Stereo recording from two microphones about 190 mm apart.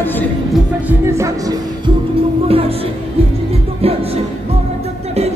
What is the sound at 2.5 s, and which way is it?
Music, 30° right (ahead or behind).